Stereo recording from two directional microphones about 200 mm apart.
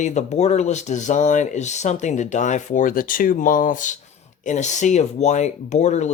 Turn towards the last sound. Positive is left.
turn(degrees=35)  # may be behind; listen again after turning